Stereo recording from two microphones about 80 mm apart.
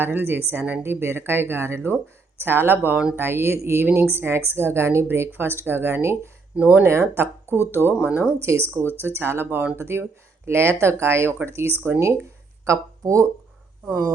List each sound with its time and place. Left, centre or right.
0.0 s speech: right
6.6 s speech: centre
6.8 s speech: right
7.9 s speech: centre
8.4 s speech: right